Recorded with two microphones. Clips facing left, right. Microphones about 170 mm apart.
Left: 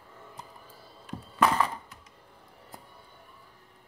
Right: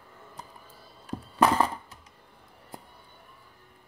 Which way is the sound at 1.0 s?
35° right (ahead or behind).